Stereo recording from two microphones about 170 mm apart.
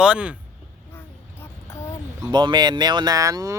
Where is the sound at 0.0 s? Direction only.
5° right (ahead or behind).